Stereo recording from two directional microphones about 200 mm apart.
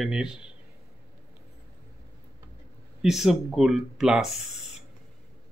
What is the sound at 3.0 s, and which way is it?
Speech, centre (ahead or behind).